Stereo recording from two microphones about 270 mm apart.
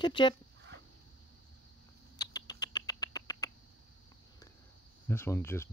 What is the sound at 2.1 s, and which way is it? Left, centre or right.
Rodents, centre.